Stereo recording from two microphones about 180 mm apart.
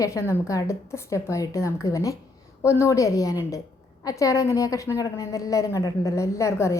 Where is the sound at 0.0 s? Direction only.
15° left (ahead or behind).